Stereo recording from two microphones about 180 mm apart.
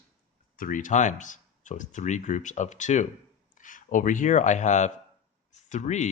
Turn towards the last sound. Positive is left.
turn(degrees=40)  # may be behind; listen again after turning